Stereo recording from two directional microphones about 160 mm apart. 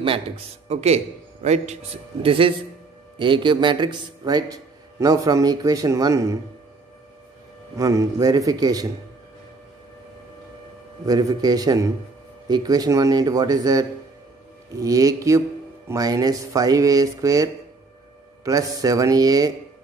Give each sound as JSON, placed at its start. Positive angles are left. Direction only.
{"t": 0.7, "sound": "a man's voice", "side_deg": -40}
{"t": 2.2, "sound": "speech", "side_deg": -35}
{"t": 7.7, "sound": "speech", "side_deg": -20}
{"t": 11.1, "sound": "speech", "side_deg": -20}